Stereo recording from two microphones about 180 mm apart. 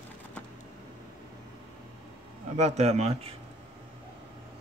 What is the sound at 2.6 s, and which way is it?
Speech, 40° right (ahead or behind).